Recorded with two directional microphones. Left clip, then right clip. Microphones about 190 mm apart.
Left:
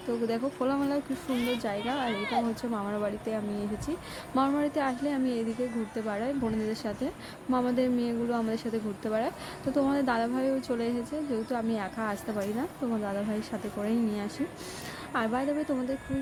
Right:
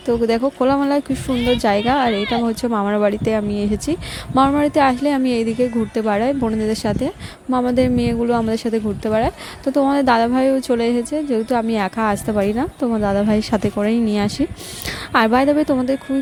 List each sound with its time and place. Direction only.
0.1 s speech: 40° right (ahead or behind)